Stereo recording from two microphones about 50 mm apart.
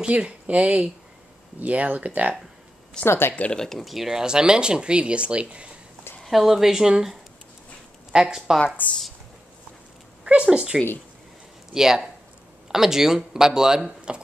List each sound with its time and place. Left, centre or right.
0.0 s speech: right
3.1 s speech: left
3.5 s speech: centre; by 5.7 s right
6.2 s speech: centre
8.6 s a woman's voice: left
10.2 s speech: right